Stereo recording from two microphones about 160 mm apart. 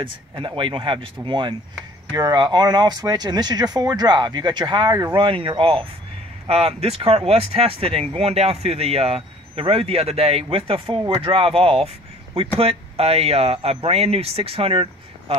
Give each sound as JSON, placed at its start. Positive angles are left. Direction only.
{"t": 0.0, "sound": "speech", "side_deg": -30}